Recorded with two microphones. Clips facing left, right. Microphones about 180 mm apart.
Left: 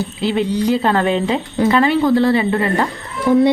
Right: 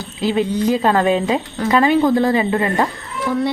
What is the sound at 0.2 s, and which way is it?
Speech, 20° right (ahead or behind).